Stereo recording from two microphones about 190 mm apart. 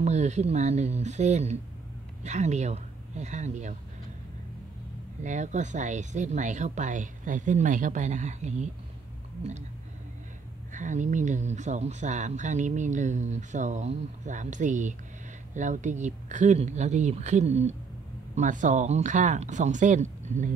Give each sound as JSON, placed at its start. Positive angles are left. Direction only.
{"t": 0.0, "sound": "speech", "side_deg": -35}
{"t": 5.2, "sound": "speech", "side_deg": -40}
{"t": 10.7, "sound": "speech", "side_deg": -40}